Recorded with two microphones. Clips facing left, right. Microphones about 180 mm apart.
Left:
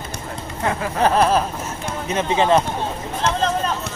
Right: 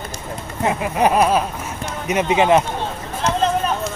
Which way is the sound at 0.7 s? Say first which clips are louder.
Right 2 dB; 15° right (ahead or behind).